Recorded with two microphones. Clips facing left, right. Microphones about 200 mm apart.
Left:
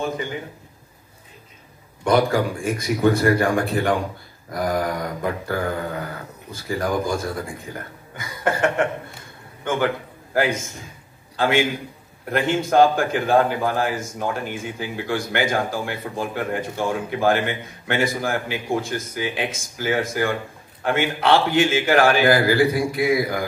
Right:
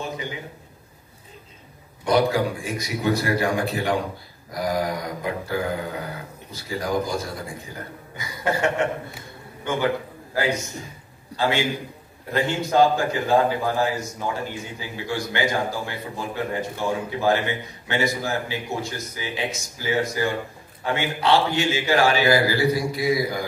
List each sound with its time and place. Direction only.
2.0 s a man's voice: 55° left (ahead or behind)
8.2 s a man's voice: 50° left (ahead or behind)
10.3 s a man's voice: 50° left (ahead or behind)